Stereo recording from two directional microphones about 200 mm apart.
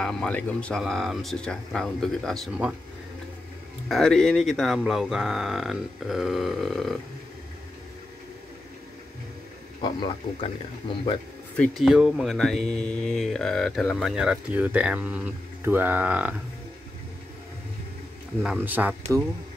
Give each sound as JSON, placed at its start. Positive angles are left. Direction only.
{"t": 0.0, "sound": "speech", "side_deg": 5}
{"t": 3.9, "sound": "speech", "side_deg": 0}
{"t": 9.8, "sound": "speech", "side_deg": 25}
{"t": 11.5, "sound": "speech", "side_deg": 5}
{"t": 18.4, "sound": "speech", "side_deg": -5}